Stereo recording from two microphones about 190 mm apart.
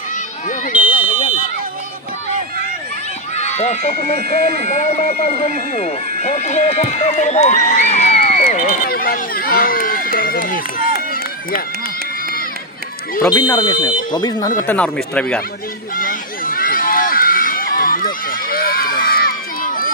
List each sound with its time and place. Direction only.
0.8 s fire alarm: 25° left (ahead or behind)
3.3 s speech: 35° left (ahead or behind)
13.3 s speech: 20° left (ahead or behind); by 15.4 s 5° left (ahead or behind)
16.0 s run: 50° left (ahead or behind)